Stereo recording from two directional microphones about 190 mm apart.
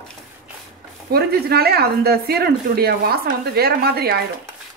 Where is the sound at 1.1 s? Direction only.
55° right (ahead or behind).